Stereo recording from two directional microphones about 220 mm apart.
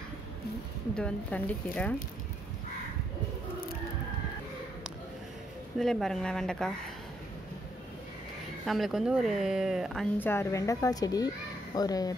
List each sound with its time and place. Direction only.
0.9 s a woman's voice: 5° left (ahead or behind)
5.8 s speech: centre (ahead or behind)
8.6 s speech: centre (ahead or behind)
10.1 s a woman's voice: 10° left (ahead or behind)